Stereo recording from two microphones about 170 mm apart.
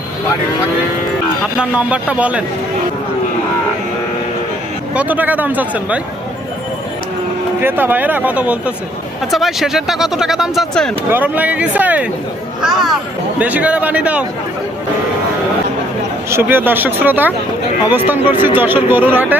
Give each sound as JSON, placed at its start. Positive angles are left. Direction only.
{"t": 1.5, "sound": "speech", "side_deg": -5}
{"t": 4.9, "sound": "speech", "side_deg": -10}
{"t": 7.6, "sound": "speech", "side_deg": -10}
{"t": 11.1, "sound": "speech", "side_deg": -10}
{"t": 13.4, "sound": "speech", "side_deg": -10}
{"t": 16.3, "sound": "speech", "side_deg": -15}